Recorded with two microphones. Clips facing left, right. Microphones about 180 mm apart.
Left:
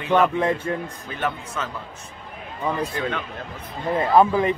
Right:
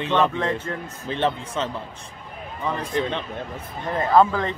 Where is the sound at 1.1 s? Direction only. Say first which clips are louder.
Right 5 dB; 30° right (ahead or behind).